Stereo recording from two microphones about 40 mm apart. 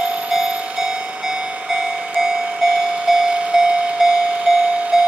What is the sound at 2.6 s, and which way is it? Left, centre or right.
Train, centre.